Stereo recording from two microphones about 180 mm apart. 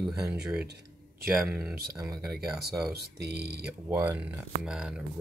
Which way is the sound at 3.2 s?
65° right (ahead or behind).